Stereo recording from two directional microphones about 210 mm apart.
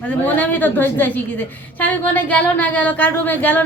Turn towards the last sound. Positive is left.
turn(degrees=5)  # may be behind; listen again after turning